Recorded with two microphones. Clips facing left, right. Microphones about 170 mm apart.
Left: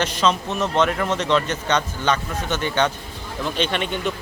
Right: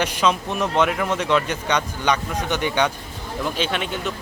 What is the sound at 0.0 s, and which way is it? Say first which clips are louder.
A man's voice: even; 10° right (ahead or behind).